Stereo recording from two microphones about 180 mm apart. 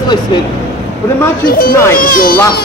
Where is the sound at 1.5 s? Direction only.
55° left (ahead or behind).